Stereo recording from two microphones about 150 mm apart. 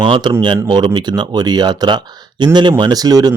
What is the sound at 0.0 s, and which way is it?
Speech, 30° right (ahead or behind).